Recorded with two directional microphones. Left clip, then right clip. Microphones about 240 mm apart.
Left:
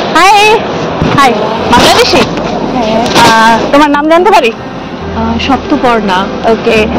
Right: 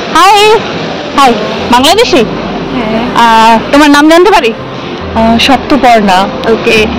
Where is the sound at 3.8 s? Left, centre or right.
Right.